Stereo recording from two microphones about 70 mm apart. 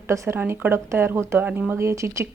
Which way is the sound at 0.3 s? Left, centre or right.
Right.